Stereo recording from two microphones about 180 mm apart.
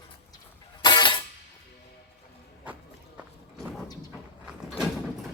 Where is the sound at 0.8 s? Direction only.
25° left (ahead or behind).